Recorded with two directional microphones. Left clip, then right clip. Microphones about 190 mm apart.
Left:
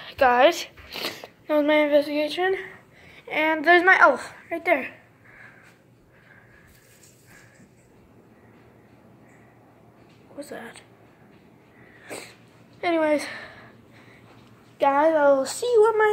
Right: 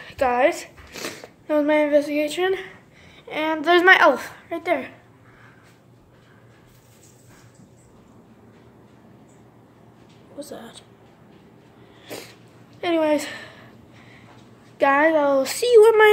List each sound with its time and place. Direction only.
0.0 s a woman's voice: 5° left (ahead or behind)
3.3 s a woman's voice: centre (ahead or behind)
3.8 s speech: 20° right (ahead or behind)
4.5 s a woman's voice: centre (ahead or behind)
12.8 s a woman's voice: 5° right (ahead or behind)
14.8 s speech: centre (ahead or behind); by 15.9 s 20° right (ahead or behind)